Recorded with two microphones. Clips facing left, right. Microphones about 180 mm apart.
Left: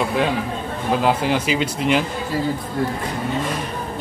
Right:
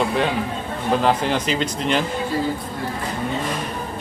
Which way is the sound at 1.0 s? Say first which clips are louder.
Left 2 dB; 5° left (ahead or behind).